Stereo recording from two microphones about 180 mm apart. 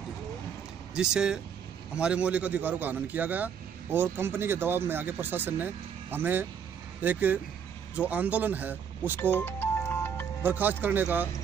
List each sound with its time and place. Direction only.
0.9 s a man's voice: 5° right (ahead or behind)
9.3 s music: 10° left (ahead or behind)
10.4 s a man's voice: 10° right (ahead or behind)